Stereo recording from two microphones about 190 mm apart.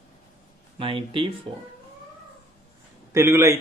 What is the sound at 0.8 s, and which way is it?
Speech, 25° right (ahead or behind).